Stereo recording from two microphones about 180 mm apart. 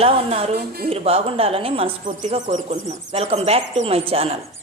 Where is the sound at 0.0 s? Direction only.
35° right (ahead or behind).